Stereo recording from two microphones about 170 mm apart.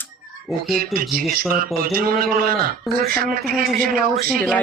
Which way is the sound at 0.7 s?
60° right (ahead or behind).